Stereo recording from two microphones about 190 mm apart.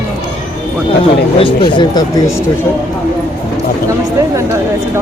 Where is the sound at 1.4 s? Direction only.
25° left (ahead or behind).